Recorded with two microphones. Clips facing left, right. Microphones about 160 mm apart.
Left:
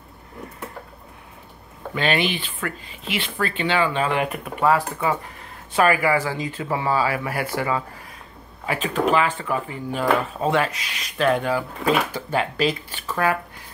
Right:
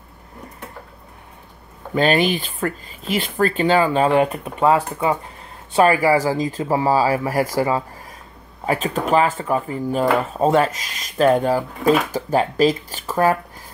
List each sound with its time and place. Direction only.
2.0 s speech: 40° right (ahead or behind)